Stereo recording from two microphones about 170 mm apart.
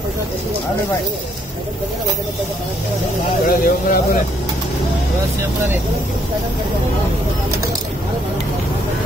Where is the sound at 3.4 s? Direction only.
55° left (ahead or behind).